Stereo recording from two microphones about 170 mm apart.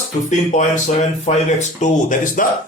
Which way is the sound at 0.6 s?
45° left (ahead or behind).